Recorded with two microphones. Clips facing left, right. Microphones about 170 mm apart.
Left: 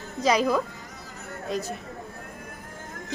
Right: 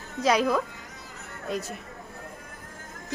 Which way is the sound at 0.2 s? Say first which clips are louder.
Left 1 dB; centre (ahead or behind).